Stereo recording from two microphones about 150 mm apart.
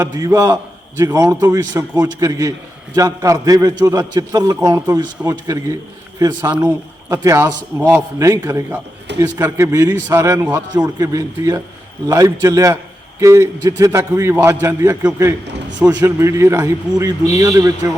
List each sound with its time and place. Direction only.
0.0 s a man's voice: 10° right (ahead or behind)
0.3 s a man's voice: 25° right (ahead or behind)